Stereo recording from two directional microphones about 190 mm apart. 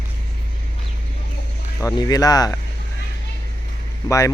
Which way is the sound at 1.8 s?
20° left (ahead or behind).